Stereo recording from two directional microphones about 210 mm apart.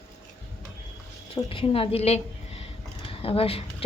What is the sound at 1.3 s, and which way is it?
A woman's voice, 25° left (ahead or behind).